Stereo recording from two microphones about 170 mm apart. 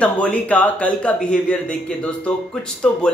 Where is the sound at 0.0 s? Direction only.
10° left (ahead or behind).